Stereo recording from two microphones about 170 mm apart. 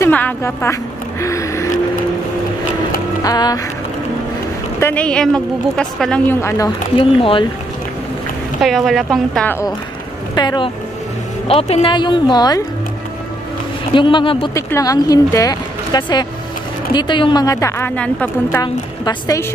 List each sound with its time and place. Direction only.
0.0 s speech: 15° left (ahead or behind)
1.2 s music: 20° left (ahead or behind)
3.3 s speech: 25° left (ahead or behind)
4.7 s speech: 10° left (ahead or behind)
7.0 s speech: 30° left (ahead or behind)
8.5 s speech: centre (ahead or behind)
10.3 s speech: 25° left (ahead or behind)
11.4 s speech: 35° left (ahead or behind)
13.9 s speech: 30° left (ahead or behind)
14.5 s speech: 20° left (ahead or behind)
18.6 s speech: 20° left (ahead or behind)